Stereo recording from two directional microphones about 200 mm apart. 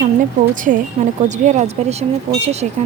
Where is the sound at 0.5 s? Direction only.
40° right (ahead or behind).